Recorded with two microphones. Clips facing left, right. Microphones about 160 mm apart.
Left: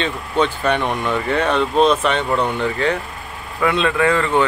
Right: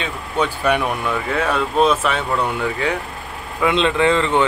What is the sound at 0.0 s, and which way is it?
Speech, 10° right (ahead or behind).